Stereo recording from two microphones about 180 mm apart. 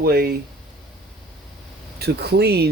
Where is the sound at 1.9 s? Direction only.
60° right (ahead or behind).